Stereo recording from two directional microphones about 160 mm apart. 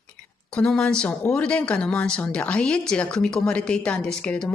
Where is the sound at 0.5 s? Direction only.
5° left (ahead or behind).